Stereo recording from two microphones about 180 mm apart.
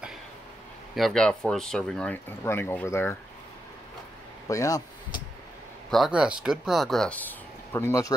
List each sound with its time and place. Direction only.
0.9 s speech: centre (ahead or behind)
4.5 s speech: 20° left (ahead or behind)
5.9 s speech: centre (ahead or behind); by 8.1 s 15° left (ahead or behind)